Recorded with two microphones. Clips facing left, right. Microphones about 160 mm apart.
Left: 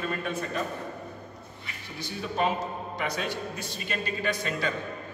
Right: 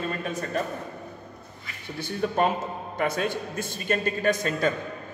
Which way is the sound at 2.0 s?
50° right (ahead or behind).